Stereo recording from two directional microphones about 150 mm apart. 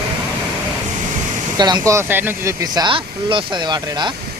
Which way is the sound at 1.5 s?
30° right (ahead or behind).